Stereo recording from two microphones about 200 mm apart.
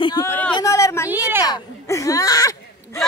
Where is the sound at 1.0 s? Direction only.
10° right (ahead or behind).